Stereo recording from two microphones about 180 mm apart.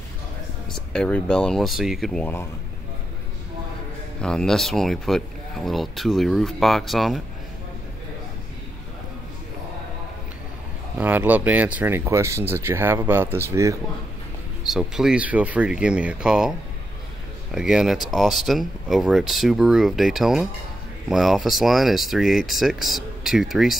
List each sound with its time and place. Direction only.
0.7 s speech: 5° left (ahead or behind)
4.2 s speech: 5° left (ahead or behind)
11.0 s speech: 10° right (ahead or behind)
14.6 s speech: centre (ahead or behind)